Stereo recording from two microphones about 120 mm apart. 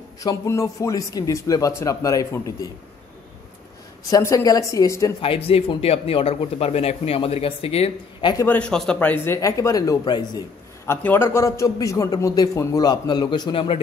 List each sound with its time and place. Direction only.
0.2 s a man's voice: 30° left (ahead or behind)
4.1 s a man's voice: 30° left (ahead or behind)
5.2 s a man's voice: 50° left (ahead or behind)
8.5 s a man's voice: 10° left (ahead or behind)
9.1 s a man's voice: 20° left (ahead or behind)
10.0 s a man's voice: 40° left (ahead or behind)
11.0 s a man's voice: 15° left (ahead or behind); by 13.7 s 45° left (ahead or behind)